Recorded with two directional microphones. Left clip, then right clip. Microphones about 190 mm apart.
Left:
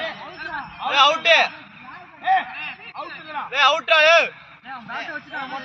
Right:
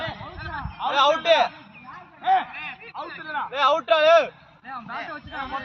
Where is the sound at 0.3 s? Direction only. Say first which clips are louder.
Left 3 dB; 30° right (ahead or behind).